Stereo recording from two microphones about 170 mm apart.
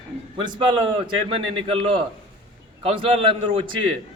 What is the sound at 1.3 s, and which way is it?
Speech, 30° right (ahead or behind).